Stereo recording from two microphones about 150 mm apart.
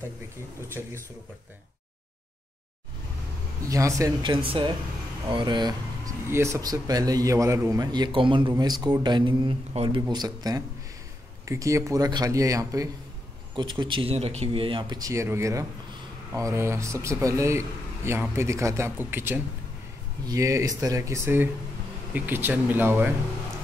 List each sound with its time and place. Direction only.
0.8 s speech: 15° right (ahead or behind)
3.6 s speech: 20° right (ahead or behind)
4.5 s speech: 35° right (ahead or behind); by 23.1 s 15° right (ahead or behind)